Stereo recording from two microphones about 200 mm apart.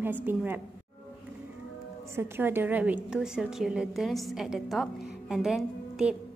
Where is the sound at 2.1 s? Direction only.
10° right (ahead or behind).